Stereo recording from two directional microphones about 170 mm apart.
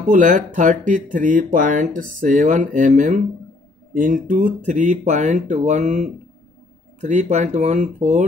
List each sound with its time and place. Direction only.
0.1 s speech: 50° right (ahead or behind)